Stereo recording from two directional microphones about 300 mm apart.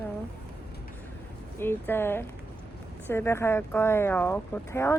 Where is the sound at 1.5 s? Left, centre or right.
Centre.